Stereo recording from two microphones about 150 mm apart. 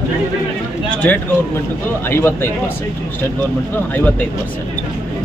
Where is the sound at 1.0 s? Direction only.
10° left (ahead or behind).